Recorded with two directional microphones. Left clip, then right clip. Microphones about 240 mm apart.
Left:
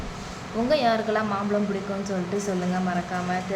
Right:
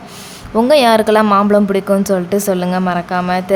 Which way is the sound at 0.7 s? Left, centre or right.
Right.